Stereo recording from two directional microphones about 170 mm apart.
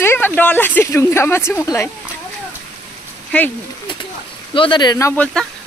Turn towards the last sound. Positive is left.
turn(degrees=20)  # may be behind; listen again after turning